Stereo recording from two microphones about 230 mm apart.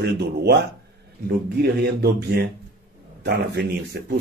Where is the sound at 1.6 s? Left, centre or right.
Right.